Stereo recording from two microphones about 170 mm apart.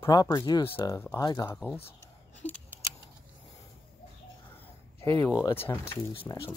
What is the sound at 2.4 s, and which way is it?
Scissors, 10° left (ahead or behind).